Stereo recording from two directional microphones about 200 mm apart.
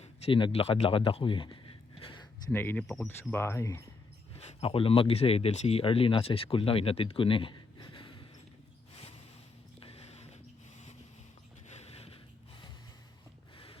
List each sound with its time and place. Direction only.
0.0 s speech: 25° left (ahead or behind)
2.5 s speech: 10° left (ahead or behind)
3.4 s speech: 10° left (ahead or behind)
4.4 s speech: 30° left (ahead or behind)
9.8 s a sound: 30° left (ahead or behind)
11.7 s a sound: 30° left (ahead or behind)